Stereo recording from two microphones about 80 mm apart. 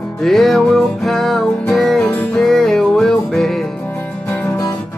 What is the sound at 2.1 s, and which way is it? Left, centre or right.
Music, left.